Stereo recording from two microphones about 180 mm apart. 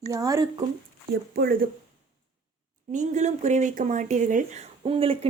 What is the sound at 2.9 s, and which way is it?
Speech, 40° right (ahead or behind).